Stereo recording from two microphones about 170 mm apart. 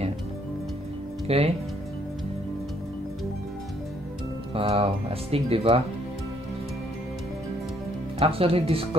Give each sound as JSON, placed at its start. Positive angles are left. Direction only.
{"t": 1.2, "sound": "speech", "side_deg": -35}
{"t": 4.6, "sound": "speech", "side_deg": -35}
{"t": 8.2, "sound": "speech", "side_deg": -35}